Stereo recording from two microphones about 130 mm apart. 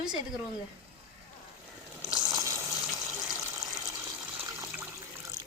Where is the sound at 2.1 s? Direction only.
30° right (ahead or behind).